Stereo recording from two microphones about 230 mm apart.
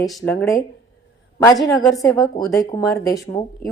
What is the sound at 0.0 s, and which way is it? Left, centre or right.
Speech, centre.